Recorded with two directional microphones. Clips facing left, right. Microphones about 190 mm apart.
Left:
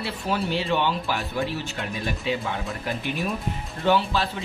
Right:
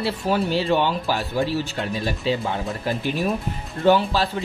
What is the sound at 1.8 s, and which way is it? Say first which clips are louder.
Speech: right 4 dB; 35° right (ahead or behind).